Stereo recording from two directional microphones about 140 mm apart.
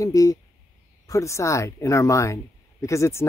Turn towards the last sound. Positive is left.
turn(degrees=20)  # may be behind; listen again after turning